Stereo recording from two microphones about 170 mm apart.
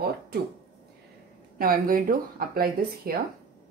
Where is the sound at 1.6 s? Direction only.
60° right (ahead or behind).